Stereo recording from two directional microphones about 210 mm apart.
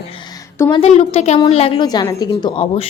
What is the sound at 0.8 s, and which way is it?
A woman's voice, 30° left (ahead or behind).